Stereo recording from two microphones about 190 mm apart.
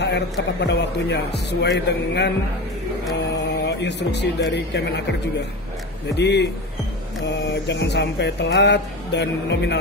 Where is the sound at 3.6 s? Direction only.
65° left (ahead or behind).